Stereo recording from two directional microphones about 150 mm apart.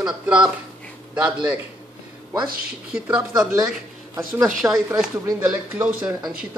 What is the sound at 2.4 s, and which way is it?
Speech, 75° right (ahead or behind).